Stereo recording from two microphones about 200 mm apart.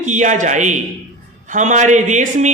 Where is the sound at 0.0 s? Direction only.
40° right (ahead or behind).